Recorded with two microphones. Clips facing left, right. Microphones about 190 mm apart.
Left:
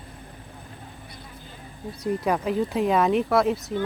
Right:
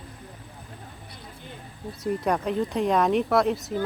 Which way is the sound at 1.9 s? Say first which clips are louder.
Left 1 dB; centre (ahead or behind).